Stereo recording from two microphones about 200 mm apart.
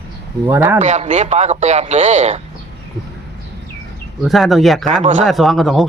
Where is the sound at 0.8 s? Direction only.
35° right (ahead or behind).